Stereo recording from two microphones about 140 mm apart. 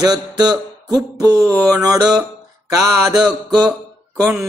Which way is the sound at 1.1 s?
25° right (ahead or behind).